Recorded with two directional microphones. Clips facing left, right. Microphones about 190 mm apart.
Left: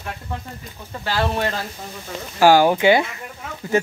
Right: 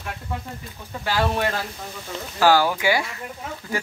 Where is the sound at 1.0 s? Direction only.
10° right (ahead or behind).